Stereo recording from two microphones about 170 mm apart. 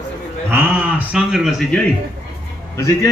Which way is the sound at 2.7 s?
15° left (ahead or behind).